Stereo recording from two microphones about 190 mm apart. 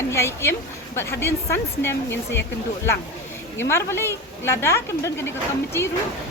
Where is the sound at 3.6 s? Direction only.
15° left (ahead or behind).